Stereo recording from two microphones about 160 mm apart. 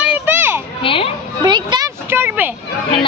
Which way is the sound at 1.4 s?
25° right (ahead or behind).